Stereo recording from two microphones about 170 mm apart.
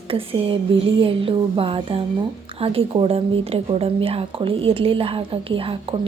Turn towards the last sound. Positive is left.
turn(degrees=-30)  # may be behind; listen again after turning